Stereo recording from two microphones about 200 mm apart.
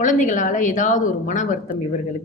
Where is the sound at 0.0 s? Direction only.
40° left (ahead or behind).